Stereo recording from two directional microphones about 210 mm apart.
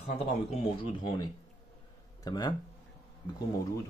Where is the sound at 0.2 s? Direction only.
30° left (ahead or behind).